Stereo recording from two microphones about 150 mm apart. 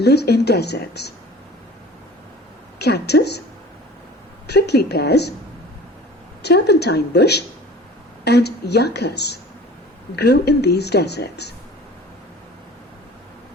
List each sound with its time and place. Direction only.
0.0 s speech: 90° left
2.7 s speech: 90° left
4.4 s speech: 90° left
6.4 s speech: 90° left